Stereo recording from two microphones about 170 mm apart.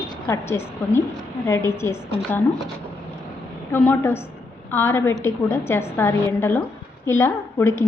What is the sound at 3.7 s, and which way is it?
Speech, 10° left (ahead or behind).